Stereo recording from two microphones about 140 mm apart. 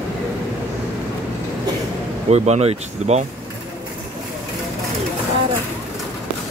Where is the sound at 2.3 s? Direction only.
50° right (ahead or behind).